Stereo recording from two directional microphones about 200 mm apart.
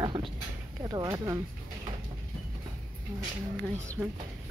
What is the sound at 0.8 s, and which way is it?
Speech, 20° right (ahead or behind).